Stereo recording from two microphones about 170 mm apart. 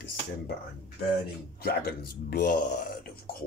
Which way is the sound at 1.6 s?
65° left (ahead or behind).